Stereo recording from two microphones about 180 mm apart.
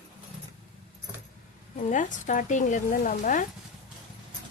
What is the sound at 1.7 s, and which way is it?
Speech, 45° left (ahead or behind).